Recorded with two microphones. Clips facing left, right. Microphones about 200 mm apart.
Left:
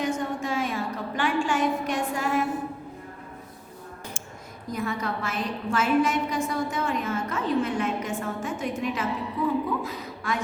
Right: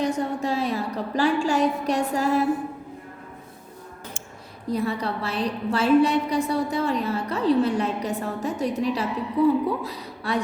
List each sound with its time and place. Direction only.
0.0 s a woman's voice: 35° right (ahead or behind)
4.7 s a woman's voice: 35° right (ahead or behind)